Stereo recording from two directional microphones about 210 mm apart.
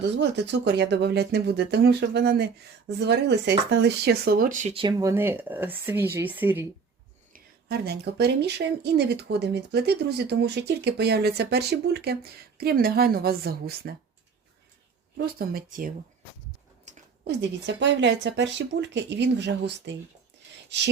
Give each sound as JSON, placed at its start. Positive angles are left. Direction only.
{"t": 0.2, "sound": "speech", "side_deg": -55}
{"t": 7.3, "sound": "speech", "side_deg": -50}
{"t": 15.4, "sound": "speech", "side_deg": -45}
{"t": 17.2, "sound": "speech", "side_deg": -60}